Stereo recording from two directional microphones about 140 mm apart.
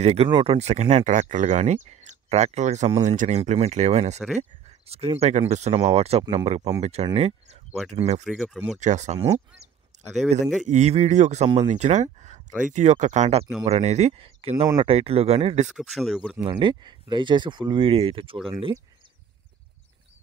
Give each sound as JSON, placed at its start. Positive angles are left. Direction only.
{"t": 0.0, "sound": "speech", "side_deg": -50}
{"t": 7.2, "sound": "a sound", "side_deg": -50}
{"t": 7.9, "sound": "speech", "side_deg": -55}
{"t": 10.4, "sound": "speech", "side_deg": 0}
{"t": 10.7, "sound": "speech", "side_deg": -50}
{"t": 15.7, "sound": "speech", "side_deg": 0}
{"t": 16.4, "sound": "speech", "side_deg": -35}